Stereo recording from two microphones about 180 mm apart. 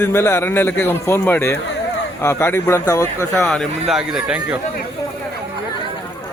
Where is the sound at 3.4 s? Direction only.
Centre (ahead or behind).